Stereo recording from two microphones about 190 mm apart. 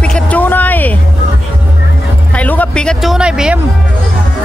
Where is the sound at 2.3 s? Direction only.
10° left (ahead or behind).